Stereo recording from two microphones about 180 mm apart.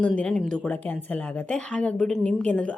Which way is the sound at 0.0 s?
5° left (ahead or behind).